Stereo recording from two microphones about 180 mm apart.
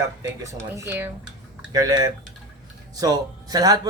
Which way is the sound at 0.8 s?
10° right (ahead or behind).